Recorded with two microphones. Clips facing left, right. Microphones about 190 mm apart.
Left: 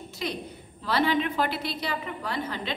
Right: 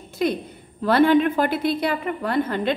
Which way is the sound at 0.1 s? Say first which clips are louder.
Right 11 dB; 55° right (ahead or behind).